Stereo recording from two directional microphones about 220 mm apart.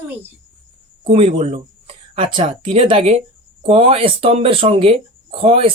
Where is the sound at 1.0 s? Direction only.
25° right (ahead or behind).